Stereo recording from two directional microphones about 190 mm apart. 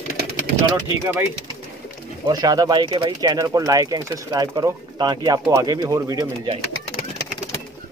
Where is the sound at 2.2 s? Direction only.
20° right (ahead or behind).